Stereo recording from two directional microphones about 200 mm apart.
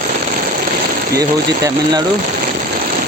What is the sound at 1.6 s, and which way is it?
Speech, 20° right (ahead or behind).